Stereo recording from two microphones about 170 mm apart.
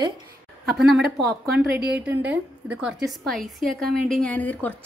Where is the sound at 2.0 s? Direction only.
10° right (ahead or behind).